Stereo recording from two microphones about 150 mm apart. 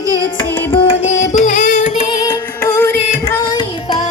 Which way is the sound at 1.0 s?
55° left (ahead or behind).